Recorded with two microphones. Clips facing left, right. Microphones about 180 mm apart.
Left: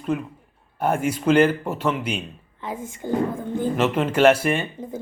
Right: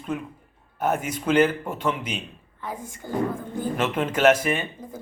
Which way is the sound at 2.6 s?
25° left (ahead or behind).